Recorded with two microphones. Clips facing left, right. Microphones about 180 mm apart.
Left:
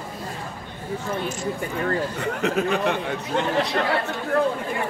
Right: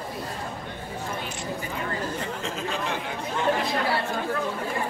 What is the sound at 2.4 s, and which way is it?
Speech, 65° left (ahead or behind).